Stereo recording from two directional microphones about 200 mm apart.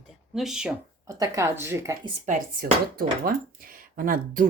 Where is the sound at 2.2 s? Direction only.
45° right (ahead or behind).